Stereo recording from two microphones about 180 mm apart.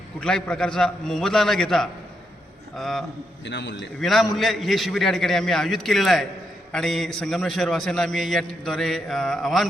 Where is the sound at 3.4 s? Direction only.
75° left (ahead or behind).